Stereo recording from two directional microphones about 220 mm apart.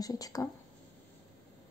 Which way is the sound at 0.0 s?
15° left (ahead or behind).